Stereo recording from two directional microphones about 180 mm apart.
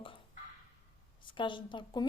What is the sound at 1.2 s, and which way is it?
Speech, 25° left (ahead or behind).